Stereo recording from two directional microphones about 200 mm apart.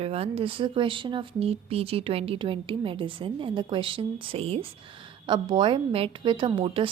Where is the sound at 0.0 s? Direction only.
30° right (ahead or behind).